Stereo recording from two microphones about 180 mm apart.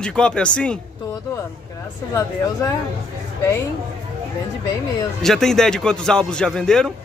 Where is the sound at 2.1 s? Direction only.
15° left (ahead or behind).